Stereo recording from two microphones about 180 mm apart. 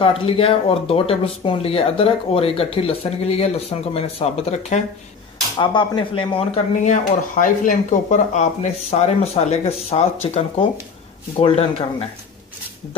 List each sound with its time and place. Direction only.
0.2 s speech: 30° left (ahead or behind)
6.8 s speech: 45° left (ahead or behind)